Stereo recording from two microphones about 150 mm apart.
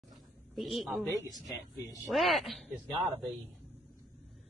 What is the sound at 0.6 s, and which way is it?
Speech, centre (ahead or behind).